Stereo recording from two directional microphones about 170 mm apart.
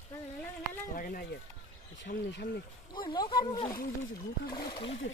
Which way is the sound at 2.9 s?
25° left (ahead or behind).